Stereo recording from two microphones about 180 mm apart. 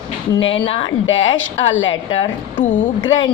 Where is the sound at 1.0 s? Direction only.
90° left.